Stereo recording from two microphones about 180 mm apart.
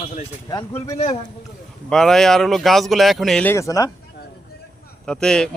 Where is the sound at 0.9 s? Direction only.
40° left (ahead or behind).